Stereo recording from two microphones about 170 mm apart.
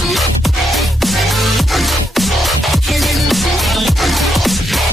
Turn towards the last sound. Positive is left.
turn(degrees=0)  # may be behind; listen again after turning